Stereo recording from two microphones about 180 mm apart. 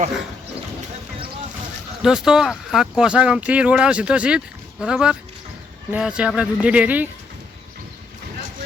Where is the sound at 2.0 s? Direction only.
5° right (ahead or behind).